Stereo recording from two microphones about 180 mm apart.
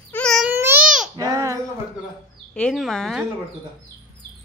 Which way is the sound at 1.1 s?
20° right (ahead or behind).